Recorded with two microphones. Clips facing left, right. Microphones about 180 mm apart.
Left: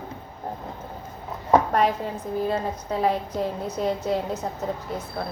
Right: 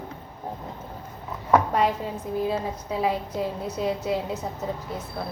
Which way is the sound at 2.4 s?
5° right (ahead or behind).